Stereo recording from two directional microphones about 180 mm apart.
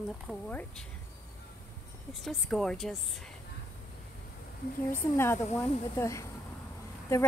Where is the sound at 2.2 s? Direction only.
Centre (ahead or behind).